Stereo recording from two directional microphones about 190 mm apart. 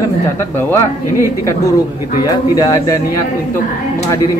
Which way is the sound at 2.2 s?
20° left (ahead or behind).